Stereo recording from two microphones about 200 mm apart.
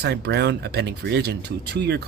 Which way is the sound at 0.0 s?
55° right (ahead or behind).